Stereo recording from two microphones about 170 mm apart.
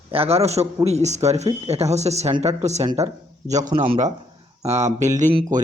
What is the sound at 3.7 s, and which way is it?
Speech, 30° right (ahead or behind).